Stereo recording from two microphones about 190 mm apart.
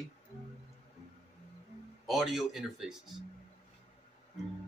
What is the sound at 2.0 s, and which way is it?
Speech, centre (ahead or behind).